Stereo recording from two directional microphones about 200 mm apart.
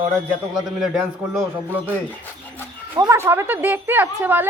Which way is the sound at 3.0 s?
15° right (ahead or behind).